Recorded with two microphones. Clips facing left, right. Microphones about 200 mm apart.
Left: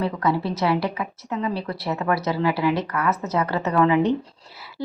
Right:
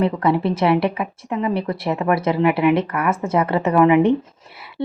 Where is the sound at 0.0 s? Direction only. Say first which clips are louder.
Right 5 dB; 25° right (ahead or behind).